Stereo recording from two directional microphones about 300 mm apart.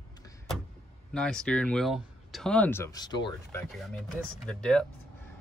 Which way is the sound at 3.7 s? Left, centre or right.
Centre.